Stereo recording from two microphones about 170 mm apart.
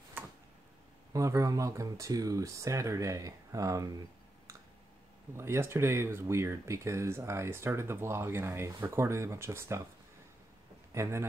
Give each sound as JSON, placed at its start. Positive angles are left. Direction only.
{"t": 0.2, "sound": "tick-tock", "side_deg": -10}
{"t": 1.1, "sound": "speech", "side_deg": -20}
{"t": 5.3, "sound": "speech", "side_deg": -15}
{"t": 10.9, "sound": "a man's voice", "side_deg": -15}